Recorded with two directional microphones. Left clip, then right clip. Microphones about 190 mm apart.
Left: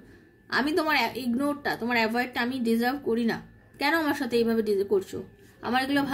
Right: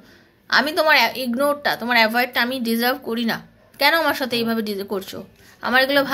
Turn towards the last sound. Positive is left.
turn(degrees=5)  # may be behind; listen again after turning